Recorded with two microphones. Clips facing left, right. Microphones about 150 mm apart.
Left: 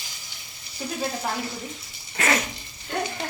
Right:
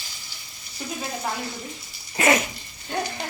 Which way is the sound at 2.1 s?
20° right (ahead or behind).